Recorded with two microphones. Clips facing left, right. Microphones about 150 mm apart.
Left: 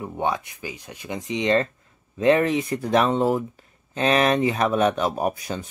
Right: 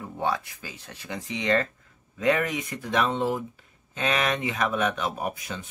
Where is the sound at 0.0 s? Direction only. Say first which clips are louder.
Left 3 dB; 20° left (ahead or behind).